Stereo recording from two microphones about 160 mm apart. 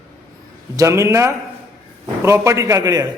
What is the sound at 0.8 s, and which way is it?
A man's voice, 20° right (ahead or behind).